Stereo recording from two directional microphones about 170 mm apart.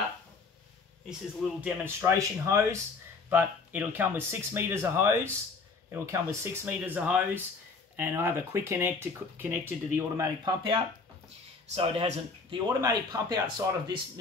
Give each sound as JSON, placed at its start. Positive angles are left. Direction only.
{"t": 1.6, "sound": "speech", "side_deg": -15}
{"t": 12.6, "sound": "speech", "side_deg": -20}